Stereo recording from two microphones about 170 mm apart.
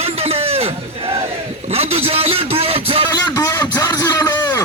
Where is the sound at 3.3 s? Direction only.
25° left (ahead or behind).